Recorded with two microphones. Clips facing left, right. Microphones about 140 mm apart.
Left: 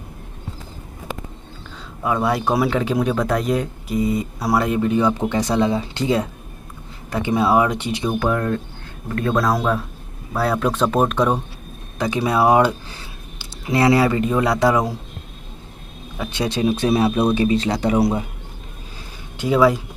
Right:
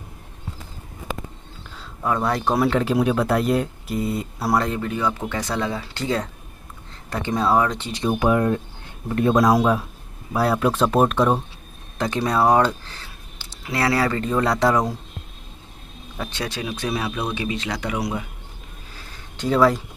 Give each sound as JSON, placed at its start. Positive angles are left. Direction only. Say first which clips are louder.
{"t": 2.0, "sound": "speech", "louder": "left 2 dB", "side_deg": 5}
{"t": 4.6, "sound": "speech", "louder": "left 6 dB", "side_deg": 20}
{"t": 8.2, "sound": "speech", "louder": "right 4 dB", "side_deg": -15}
{"t": 16.3, "sound": "speech", "louder": "left 10 dB", "side_deg": 20}
{"t": 19.3, "sound": "speech", "louder": "left 2 dB", "side_deg": 5}